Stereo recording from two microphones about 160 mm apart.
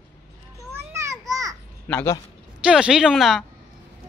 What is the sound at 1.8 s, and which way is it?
Speech, 10° left (ahead or behind).